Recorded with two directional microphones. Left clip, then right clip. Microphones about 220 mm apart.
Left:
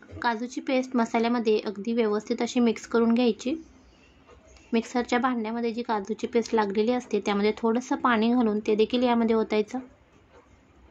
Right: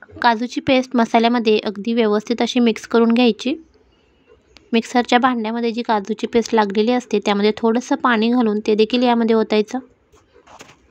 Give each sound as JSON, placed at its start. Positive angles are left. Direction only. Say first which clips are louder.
{"t": 0.2, "sound": "a woman's voice", "louder": "right 11 dB", "side_deg": -35}
{"t": 4.6, "sound": "a woman's voice", "louder": "right 10 dB", "side_deg": -35}